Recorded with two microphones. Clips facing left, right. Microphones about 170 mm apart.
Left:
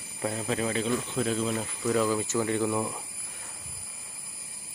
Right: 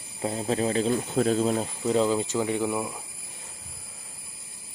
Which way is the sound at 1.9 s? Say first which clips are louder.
Right 2 dB; 25° right (ahead or behind).